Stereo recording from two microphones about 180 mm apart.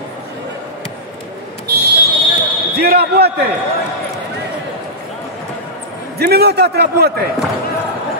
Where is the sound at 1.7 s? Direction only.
65° right (ahead or behind).